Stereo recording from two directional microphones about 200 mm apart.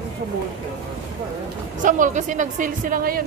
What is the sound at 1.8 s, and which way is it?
A woman's voice, 40° right (ahead or behind).